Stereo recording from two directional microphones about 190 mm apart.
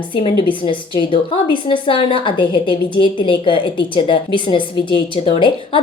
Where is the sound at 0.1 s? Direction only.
25° left (ahead or behind).